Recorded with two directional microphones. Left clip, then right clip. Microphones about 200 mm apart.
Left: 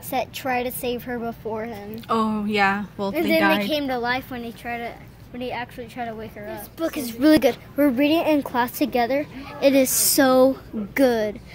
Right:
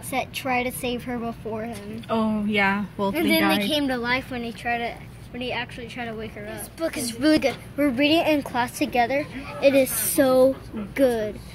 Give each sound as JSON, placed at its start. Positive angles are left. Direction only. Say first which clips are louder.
{"t": 0.1, "sound": "a woman's voice", "louder": "left 1 dB", "side_deg": 50}
{"t": 2.0, "sound": "a woman's voice", "louder": "left 2 dB", "side_deg": 20}
{"t": 3.7, "sound": "a woman's voice", "louder": "even", "side_deg": 50}